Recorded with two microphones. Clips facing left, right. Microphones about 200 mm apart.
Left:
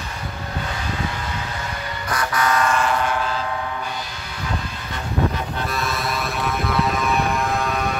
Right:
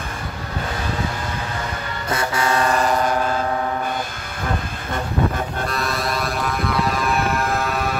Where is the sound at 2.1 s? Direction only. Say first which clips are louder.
Right 1 dB; 25° right (ahead or behind); by 5.6 s 50° right (ahead or behind).